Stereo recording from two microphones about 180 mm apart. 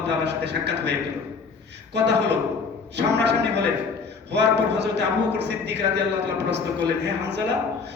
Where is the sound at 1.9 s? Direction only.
70° right (ahead or behind).